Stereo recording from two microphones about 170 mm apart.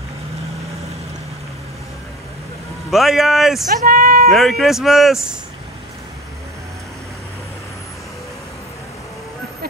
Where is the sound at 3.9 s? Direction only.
60° right (ahead or behind).